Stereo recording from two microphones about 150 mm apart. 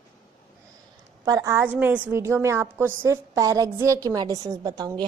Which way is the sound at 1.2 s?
20° right (ahead or behind).